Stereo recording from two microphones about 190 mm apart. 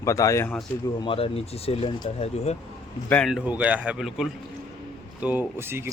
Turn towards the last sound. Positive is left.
turn(degrees=-10)  # may be behind; listen again after turning